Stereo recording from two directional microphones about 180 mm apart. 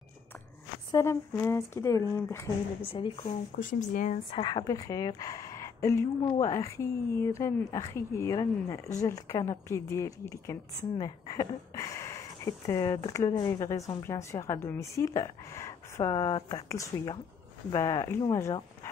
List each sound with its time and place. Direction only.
0.9 s a woman's voice: 15° left (ahead or behind)
2.8 s speech: 30° left (ahead or behind)
3.2 s speech: 45° left (ahead or behind)
4.3 s a woman's voice: 25° left (ahead or behind)